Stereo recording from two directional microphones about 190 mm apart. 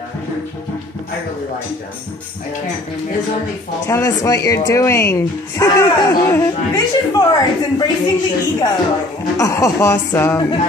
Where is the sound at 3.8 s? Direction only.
15° left (ahead or behind).